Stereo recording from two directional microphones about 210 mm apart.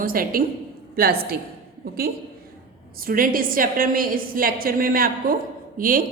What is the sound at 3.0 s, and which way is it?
A woman's voice, 45° right (ahead or behind).